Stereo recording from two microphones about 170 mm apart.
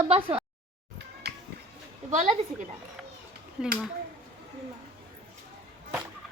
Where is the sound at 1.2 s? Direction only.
70° right (ahead or behind).